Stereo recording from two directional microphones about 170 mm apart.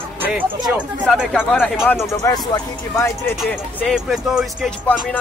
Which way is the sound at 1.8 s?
15° left (ahead or behind).